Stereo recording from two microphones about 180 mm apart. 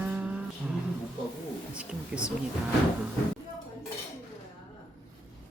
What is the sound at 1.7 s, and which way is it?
Speech, 5° right (ahead or behind).